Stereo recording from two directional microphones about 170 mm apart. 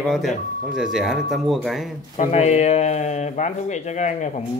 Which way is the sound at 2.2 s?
40° left (ahead or behind).